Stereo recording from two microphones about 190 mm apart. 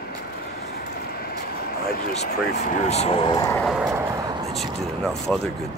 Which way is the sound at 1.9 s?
50° left (ahead or behind).